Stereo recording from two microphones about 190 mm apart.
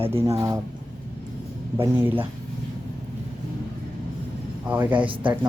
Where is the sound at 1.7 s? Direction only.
10° right (ahead or behind).